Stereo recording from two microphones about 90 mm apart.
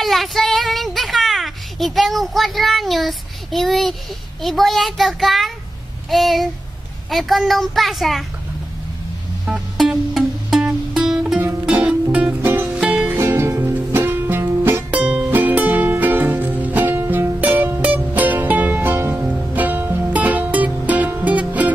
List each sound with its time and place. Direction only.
0.0 s child singing: centre (ahead or behind)
4.4 s speech: centre (ahead or behind)
9.5 s music: 5° right (ahead or behind)
11.7 s music: 15° right (ahead or behind)
13.2 s music: 30° right (ahead or behind)